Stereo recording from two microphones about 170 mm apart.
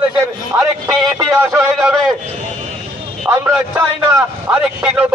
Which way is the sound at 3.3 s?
15° right (ahead or behind).